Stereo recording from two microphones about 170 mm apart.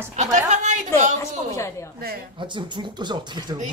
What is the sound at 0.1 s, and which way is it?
Speech, 40° right (ahead or behind).